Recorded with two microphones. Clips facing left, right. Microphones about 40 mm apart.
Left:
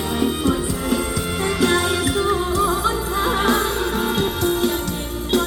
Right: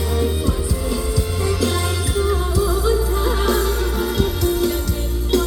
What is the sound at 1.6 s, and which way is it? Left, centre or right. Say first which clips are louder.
Music: left 4 dB; left.